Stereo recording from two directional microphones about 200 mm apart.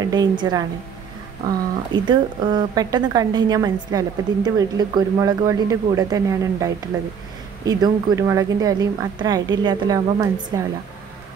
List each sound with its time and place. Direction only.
0.0 s a woman's voice: 20° right (ahead or behind)
1.9 s a woman's voice: 20° right (ahead or behind)